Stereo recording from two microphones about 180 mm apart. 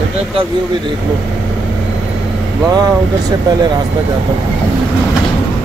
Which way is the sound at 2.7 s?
20° right (ahead or behind).